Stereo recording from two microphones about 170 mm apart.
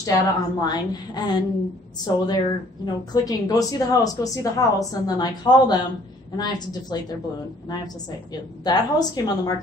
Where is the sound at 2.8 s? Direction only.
25° left (ahead or behind).